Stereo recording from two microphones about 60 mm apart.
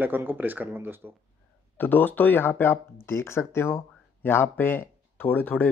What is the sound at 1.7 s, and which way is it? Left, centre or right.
Speech, left.